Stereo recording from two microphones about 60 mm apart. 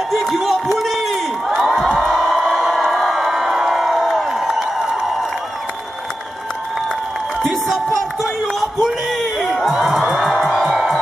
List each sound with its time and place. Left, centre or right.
0.1 s crowd: centre
7.4 s a sound: centre
10.2 s music: centre